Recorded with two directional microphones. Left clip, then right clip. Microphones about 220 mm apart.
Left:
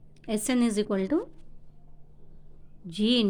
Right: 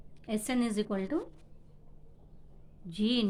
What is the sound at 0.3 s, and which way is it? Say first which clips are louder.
Speech: left 5 dB; 35° left (ahead or behind).